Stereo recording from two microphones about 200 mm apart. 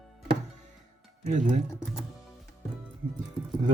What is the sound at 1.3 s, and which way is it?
Speech, 40° right (ahead or behind).